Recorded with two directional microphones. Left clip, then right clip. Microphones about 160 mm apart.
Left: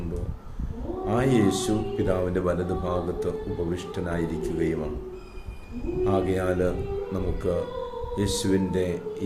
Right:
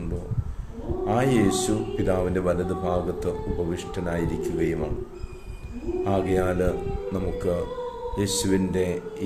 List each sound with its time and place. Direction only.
1.0 s speech: 15° right (ahead or behind)
6.1 s speech: 15° right (ahead or behind)